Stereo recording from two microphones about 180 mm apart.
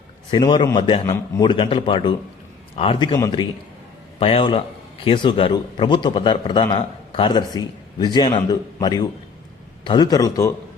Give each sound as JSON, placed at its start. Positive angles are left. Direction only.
{"t": 0.3, "sound": "a man's voice", "side_deg": 25}
{"t": 1.0, "sound": "a man's voice", "side_deg": 15}
{"t": 1.5, "sound": "a man's voice", "side_deg": 30}